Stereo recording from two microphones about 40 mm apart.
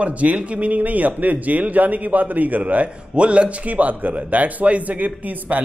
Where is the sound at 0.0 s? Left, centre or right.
Right.